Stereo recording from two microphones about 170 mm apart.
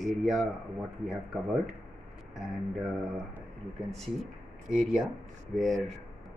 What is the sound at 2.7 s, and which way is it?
Speech, centre (ahead or behind).